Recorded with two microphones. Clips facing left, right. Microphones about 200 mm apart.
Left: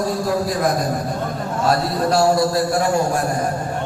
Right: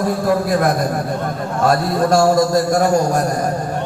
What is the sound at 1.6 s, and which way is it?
A man's voice, 45° right (ahead or behind).